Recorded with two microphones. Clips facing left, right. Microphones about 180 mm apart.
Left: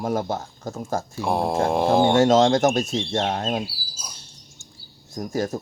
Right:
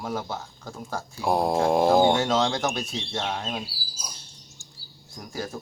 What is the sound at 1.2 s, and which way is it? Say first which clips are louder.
Speech: even; centre (ahead or behind).